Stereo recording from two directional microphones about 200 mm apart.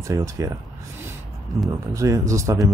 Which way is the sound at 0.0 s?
15° right (ahead or behind).